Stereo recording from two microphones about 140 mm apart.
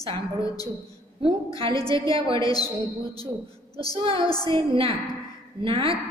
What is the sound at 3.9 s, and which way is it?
A woman's voice, 40° right (ahead or behind).